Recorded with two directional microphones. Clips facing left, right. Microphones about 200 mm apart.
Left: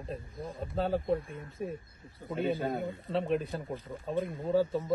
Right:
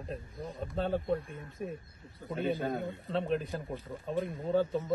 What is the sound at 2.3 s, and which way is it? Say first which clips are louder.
Speech: left 1 dB; centre (ahead or behind).